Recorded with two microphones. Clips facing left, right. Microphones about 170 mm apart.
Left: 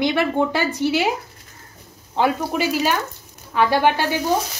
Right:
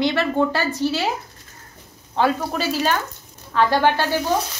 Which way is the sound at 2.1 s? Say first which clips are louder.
Left 1 dB; 15° left (ahead or behind).